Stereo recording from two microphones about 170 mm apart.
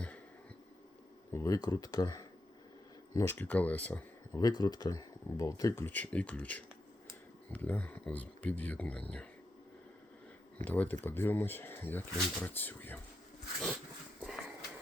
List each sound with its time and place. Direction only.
1.3 s speech: 20° left (ahead or behind)
4.4 s speech: 20° left (ahead or behind)
10.6 s speech: 10° left (ahead or behind)
14.3 s a sound: 5° right (ahead or behind)